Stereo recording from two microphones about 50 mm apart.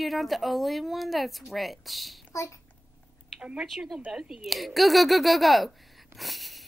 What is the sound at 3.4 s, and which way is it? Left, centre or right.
Speech, centre.